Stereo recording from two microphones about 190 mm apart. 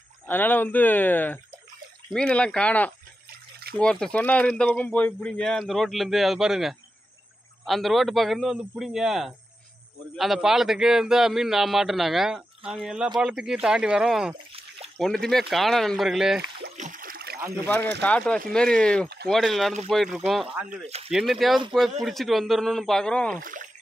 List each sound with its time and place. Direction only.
0.3 s speech: 10° left (ahead or behind)
3.3 s water: 55° right (ahead or behind)
3.7 s speech: 5° left (ahead or behind)
16.7 s a sound: 45° right (ahead or behind)
18.0 s speech: 5° left (ahead or behind)
23.4 s speech: 45° right (ahead or behind)